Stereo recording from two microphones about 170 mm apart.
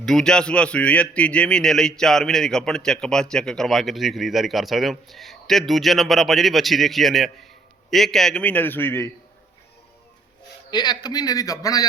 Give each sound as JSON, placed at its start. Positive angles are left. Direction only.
{"t": 0.0, "sound": "a man's voice", "side_deg": 5}
{"t": 10.7, "sound": "a man's voice", "side_deg": 25}